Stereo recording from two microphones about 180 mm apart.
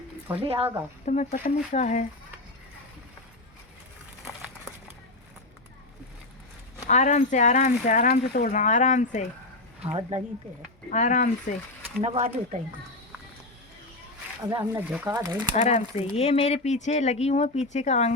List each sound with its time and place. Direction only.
0.4 s speech: 30° right (ahead or behind)
1.0 s speech: 40° left (ahead or behind)
6.8 s speech: 40° left (ahead or behind)
9.8 s speech: 35° right (ahead or behind)
10.9 s speech: 40° left (ahead or behind)
11.9 s speech: 35° right (ahead or behind)
14.6 s speech: 10° right (ahead or behind)
15.1 s speech: 20° right (ahead or behind)
15.5 s speech: 35° left (ahead or behind)